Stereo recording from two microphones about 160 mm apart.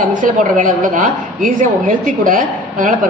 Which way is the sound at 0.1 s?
55° right (ahead or behind).